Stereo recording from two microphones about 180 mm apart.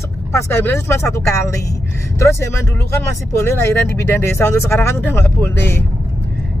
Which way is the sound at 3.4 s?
15° left (ahead or behind).